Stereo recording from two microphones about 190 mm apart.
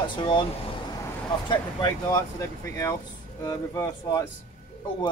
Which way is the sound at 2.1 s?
15° left (ahead or behind).